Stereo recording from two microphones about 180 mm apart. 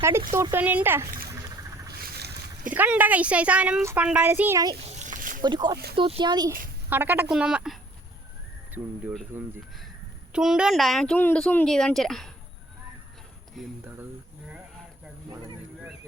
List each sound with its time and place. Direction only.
0.3 s a child's voice: 15° right (ahead or behind)
1.9 s boat: 60° right (ahead or behind)
2.7 s a child's voice: 10° right (ahead or behind)
4.9 s a sound: 40° right (ahead or behind)
5.4 s speech: 25° right (ahead or behind)
5.7 s speech: 65° right (ahead or behind)
6.0 s speech: 30° right (ahead or behind)
6.9 s speech: 10° right (ahead or behind)
9.3 s a child's voice: 10° right (ahead or behind)
13.8 s a child's voice: 10° right (ahead or behind)